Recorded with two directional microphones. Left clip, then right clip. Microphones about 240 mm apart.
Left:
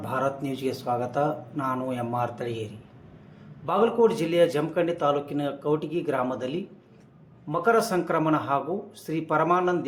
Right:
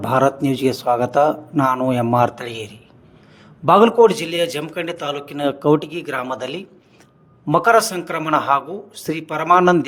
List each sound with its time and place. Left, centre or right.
0.0 s a man's voice: right